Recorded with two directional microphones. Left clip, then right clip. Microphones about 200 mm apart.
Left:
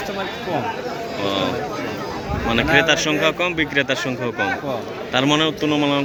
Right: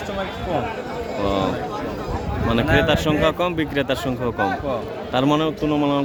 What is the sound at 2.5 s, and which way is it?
A man's voice, 25° right (ahead or behind).